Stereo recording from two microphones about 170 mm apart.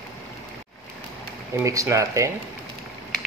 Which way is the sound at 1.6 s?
20° right (ahead or behind).